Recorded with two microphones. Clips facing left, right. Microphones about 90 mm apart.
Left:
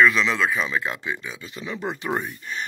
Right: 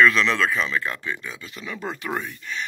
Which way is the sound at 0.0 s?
5° left (ahead or behind).